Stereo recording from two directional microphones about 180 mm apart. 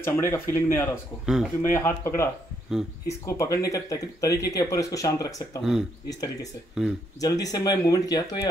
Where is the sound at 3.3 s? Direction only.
20° left (ahead or behind).